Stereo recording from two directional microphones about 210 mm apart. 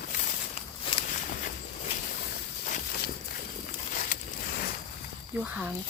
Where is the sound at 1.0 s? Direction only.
40° left (ahead or behind).